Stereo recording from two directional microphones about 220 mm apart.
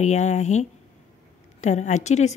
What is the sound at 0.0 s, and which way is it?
A woman's voice, 30° left (ahead or behind).